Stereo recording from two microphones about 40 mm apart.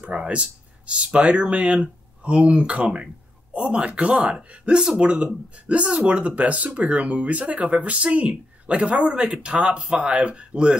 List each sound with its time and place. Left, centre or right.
0.2 s speech: right